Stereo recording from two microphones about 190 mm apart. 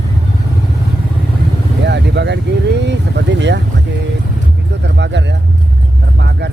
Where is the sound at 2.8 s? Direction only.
65° right (ahead or behind).